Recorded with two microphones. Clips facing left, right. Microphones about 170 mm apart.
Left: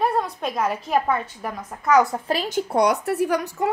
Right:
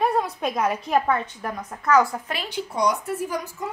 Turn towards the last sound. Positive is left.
turn(degrees=70)  # may be behind; listen again after turning